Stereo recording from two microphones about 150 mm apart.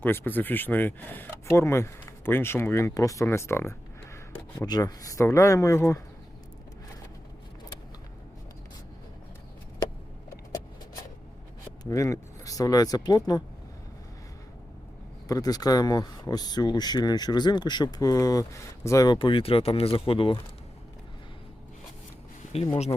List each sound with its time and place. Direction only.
0.0 s speech: 15° left (ahead or behind)
10.2 s vehicle: 25° left (ahead or behind)
11.8 s speech: 20° left (ahead or behind)
15.3 s speech: 25° left (ahead or behind)